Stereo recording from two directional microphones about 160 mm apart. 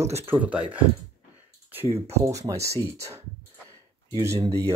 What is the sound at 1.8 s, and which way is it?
Speech, 40° right (ahead or behind).